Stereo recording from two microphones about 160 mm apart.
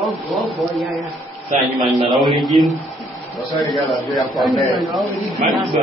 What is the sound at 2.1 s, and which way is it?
Speech, 30° right (ahead or behind).